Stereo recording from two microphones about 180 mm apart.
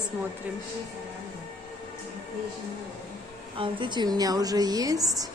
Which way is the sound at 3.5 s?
25° right (ahead or behind).